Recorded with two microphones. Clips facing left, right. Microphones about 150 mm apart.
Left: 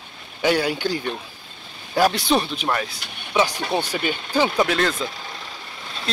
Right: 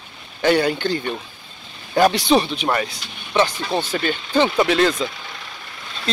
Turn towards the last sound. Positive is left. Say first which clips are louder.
# right 3 dB
turn(degrees=0)  # may be behind; listen again after turning